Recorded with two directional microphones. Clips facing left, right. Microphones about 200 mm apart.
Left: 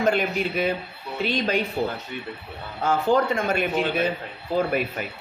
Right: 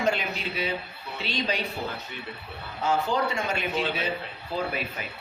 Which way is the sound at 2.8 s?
50° left (ahead or behind).